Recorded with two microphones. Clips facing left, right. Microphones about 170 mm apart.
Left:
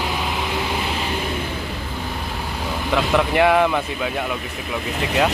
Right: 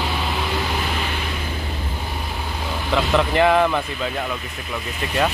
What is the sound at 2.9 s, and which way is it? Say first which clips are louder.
Vehicle: even; 10° left (ahead or behind).